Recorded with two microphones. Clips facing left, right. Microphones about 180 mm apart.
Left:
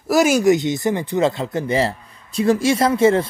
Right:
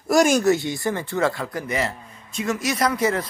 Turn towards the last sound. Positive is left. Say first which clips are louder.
# left 7 dB
turn(degrees=25)  # may be behind; listen again after turning